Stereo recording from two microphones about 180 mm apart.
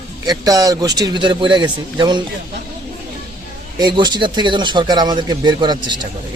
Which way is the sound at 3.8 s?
25° right (ahead or behind).